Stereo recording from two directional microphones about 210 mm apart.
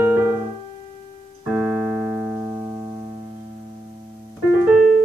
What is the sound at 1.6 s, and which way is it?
Music, 10° right (ahead or behind).